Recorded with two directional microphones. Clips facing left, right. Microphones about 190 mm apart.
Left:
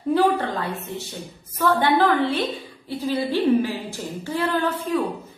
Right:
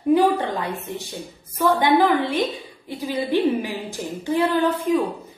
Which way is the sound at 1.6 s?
10° right (ahead or behind).